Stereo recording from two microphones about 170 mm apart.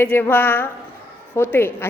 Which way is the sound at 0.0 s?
10° left (ahead or behind).